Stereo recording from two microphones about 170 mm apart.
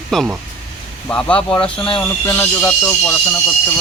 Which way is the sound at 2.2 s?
15° left (ahead or behind).